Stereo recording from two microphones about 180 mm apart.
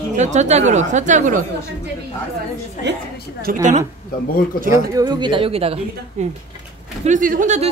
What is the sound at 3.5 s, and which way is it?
Speech, 50° right (ahead or behind).